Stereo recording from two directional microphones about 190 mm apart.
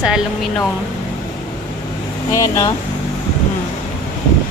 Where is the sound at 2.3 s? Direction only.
20° left (ahead or behind).